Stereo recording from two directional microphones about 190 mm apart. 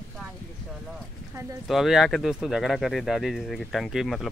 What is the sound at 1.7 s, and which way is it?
Speech, centre (ahead or behind).